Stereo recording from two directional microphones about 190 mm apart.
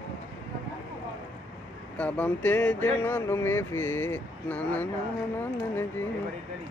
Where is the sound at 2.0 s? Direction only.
5° left (ahead or behind).